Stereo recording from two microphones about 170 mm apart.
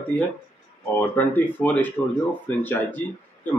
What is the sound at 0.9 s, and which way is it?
A man's voice, 10° left (ahead or behind).